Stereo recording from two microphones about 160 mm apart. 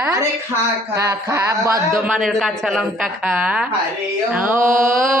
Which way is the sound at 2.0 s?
Centre (ahead or behind).